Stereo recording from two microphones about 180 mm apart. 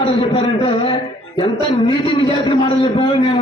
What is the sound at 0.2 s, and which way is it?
A man's voice, 30° left (ahead or behind).